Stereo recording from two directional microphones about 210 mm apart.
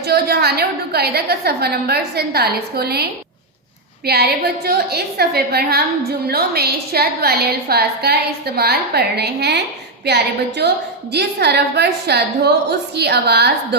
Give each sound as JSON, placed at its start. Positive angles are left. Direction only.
{"t": 0.0, "sound": "a woman's voice", "side_deg": -50}